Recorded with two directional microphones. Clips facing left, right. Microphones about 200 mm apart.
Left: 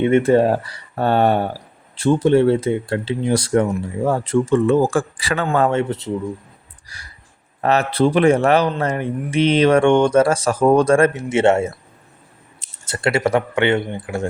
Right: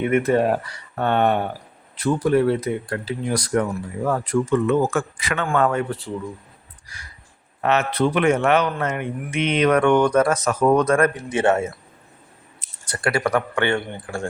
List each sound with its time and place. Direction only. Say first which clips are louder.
0.0 s speech: left 4 dB; 30° left (ahead or behind)
7.6 s speech: left 3 dB; 35° left (ahead or behind); by 14.3 s 20° left (ahead or behind)